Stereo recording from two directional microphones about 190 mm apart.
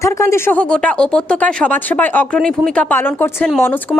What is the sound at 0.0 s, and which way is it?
A woman's voice, 15° left (ahead or behind).